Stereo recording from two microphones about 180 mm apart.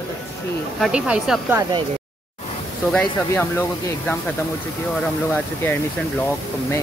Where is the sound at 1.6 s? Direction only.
25° right (ahead or behind).